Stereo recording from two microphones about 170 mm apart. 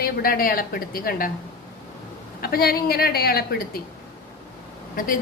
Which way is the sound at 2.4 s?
60° left (ahead or behind).